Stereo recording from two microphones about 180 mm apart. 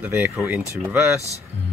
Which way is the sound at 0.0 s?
10° right (ahead or behind).